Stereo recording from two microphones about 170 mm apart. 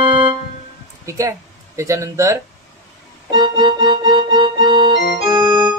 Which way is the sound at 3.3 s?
25° right (ahead or behind).